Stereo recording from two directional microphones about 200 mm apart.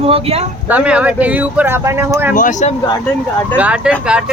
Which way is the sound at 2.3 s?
40° left (ahead or behind).